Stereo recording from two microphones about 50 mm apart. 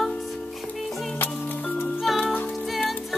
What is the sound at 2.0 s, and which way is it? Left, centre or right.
Music, centre.